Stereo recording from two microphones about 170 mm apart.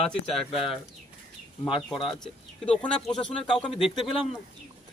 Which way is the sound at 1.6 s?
30° left (ahead or behind).